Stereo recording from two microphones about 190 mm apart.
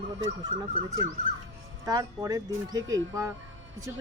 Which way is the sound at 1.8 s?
20° right (ahead or behind).